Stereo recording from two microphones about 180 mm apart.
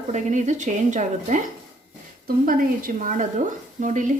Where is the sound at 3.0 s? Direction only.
45° right (ahead or behind).